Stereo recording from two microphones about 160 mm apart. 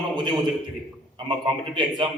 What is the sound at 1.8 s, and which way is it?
Speech, 30° right (ahead or behind).